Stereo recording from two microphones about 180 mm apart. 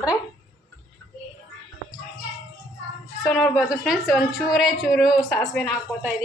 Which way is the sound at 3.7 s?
Centre (ahead or behind).